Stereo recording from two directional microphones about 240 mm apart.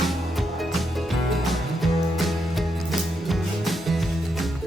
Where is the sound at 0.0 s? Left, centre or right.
Centre.